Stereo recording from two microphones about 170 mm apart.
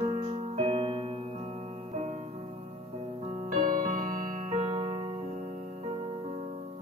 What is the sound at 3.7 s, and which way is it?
Music, 50° right (ahead or behind).